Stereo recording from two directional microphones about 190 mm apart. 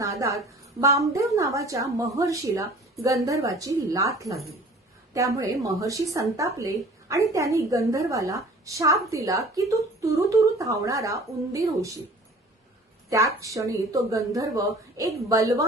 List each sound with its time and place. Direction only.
0.0 s a woman's voice: 15° right (ahead or behind)
13.1 s a woman's voice: 15° right (ahead or behind)